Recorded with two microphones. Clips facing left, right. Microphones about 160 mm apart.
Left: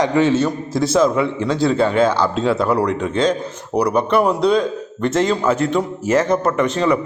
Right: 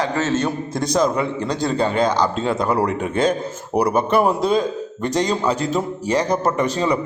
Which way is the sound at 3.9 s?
Centre (ahead or behind).